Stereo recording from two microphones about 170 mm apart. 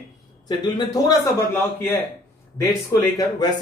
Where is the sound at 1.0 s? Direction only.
15° left (ahead or behind).